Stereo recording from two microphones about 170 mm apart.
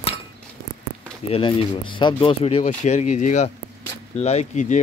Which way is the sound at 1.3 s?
30° left (ahead or behind).